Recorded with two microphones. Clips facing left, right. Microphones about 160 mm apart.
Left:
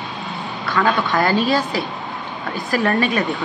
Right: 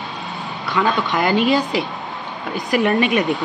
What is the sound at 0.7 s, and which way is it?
Speech, 20° right (ahead or behind).